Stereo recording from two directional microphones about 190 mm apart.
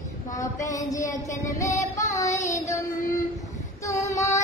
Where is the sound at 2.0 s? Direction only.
40° left (ahead or behind).